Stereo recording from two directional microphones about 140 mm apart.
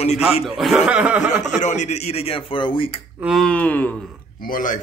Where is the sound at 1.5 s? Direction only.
60° left (ahead or behind); by 3.0 s 40° left (ahead or behind).